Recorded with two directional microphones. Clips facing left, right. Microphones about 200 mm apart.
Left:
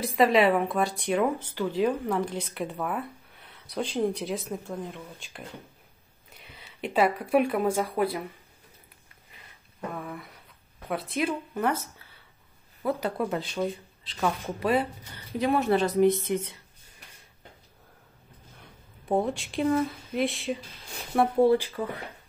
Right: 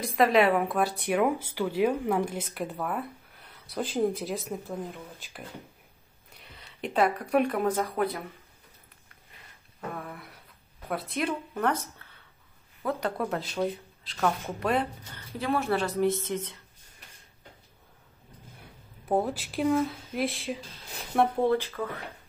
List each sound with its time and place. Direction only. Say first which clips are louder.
0.0 s speech: left 1 dB; centre (ahead or behind)
10.9 s speech: left 2 dB; centre (ahead or behind)
12.8 s speech: left 2 dB; 5° left (ahead or behind)
15.3 s a woman's voice: left 4 dB; 20° left (ahead or behind)
19.0 s speech: left 1 dB; 5° right (ahead or behind); by 22.0 s 15° left (ahead or behind)